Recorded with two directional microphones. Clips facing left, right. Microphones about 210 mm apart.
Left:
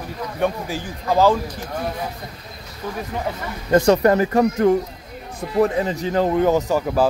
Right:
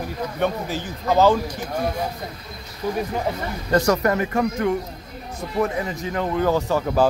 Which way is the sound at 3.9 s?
30° left (ahead or behind).